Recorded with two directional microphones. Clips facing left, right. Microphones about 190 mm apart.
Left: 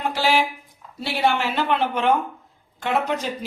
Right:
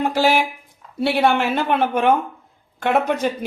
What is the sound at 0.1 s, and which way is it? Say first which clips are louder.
Speech: right 3 dB; 45° right (ahead or behind).